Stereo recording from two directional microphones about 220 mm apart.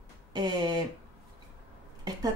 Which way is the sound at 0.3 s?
20° right (ahead or behind).